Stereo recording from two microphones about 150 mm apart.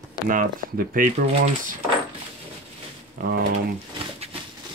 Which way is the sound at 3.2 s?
60° right (ahead or behind).